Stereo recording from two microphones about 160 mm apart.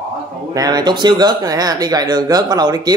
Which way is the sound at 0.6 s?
25° right (ahead or behind).